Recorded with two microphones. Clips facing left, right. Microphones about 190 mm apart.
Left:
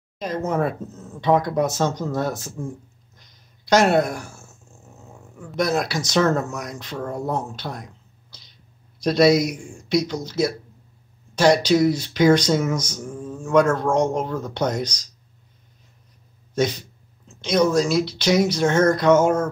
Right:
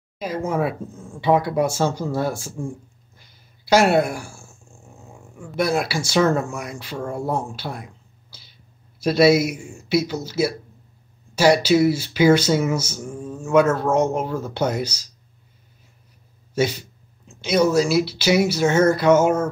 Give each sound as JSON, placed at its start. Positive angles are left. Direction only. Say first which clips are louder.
{"t": 0.2, "sound": "speech", "louder": "even", "side_deg": -10}
{"t": 16.5, "sound": "speech", "louder": "even", "side_deg": -5}